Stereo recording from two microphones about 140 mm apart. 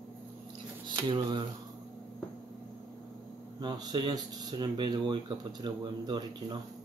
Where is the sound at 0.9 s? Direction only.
30° right (ahead or behind).